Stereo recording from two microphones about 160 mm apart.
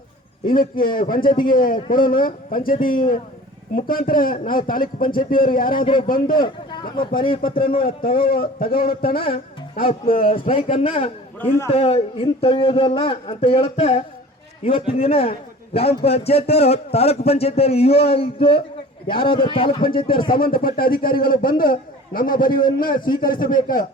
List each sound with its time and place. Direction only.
0.4 s a man's voice: 65° left (ahead or behind)
5.7 s a man's voice: 30° left (ahead or behind)
6.1 s a man's voice: 65° left (ahead or behind)
6.4 s speech: 30° left (ahead or behind)
8.1 s speech: 65° left (ahead or behind)
10.2 s a man's voice: 35° left (ahead or behind)
20.4 s a man's voice: 65° left (ahead or behind)